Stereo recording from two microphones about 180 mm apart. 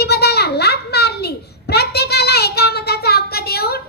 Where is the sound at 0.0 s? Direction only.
65° left (ahead or behind).